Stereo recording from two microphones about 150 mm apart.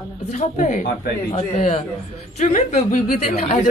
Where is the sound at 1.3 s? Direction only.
40° left (ahead or behind).